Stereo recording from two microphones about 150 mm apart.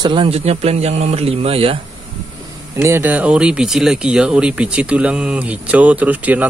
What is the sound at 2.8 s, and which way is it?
Speech, 15° right (ahead or behind).